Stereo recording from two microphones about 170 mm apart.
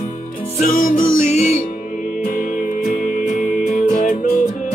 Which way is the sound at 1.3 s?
40° left (ahead or behind).